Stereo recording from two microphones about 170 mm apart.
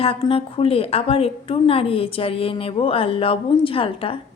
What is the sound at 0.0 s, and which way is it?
A woman's voice, 35° left (ahead or behind).